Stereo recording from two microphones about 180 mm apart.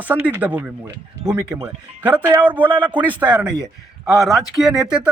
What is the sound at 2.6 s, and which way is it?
Speech, 25° right (ahead or behind).